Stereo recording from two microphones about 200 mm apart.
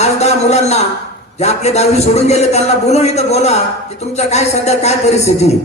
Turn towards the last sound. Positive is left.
turn(degrees=30)  # may be behind; listen again after turning